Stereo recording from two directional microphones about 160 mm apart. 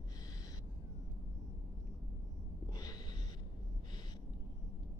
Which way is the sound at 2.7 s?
25° left (ahead or behind).